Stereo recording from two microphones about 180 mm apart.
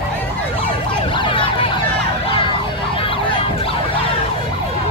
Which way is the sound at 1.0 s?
30° left (ahead or behind).